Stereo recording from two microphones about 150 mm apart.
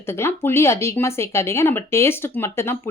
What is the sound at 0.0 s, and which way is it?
A woman's voice, 15° left (ahead or behind).